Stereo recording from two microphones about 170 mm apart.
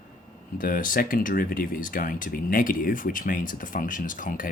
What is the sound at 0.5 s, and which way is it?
Speech, 55° left (ahead or behind).